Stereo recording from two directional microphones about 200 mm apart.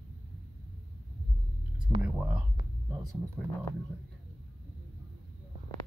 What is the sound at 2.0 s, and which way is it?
Speech, 5° right (ahead or behind).